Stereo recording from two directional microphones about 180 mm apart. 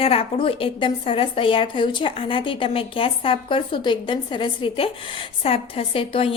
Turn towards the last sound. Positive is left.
turn(degrees=30)  # may be behind; listen again after turning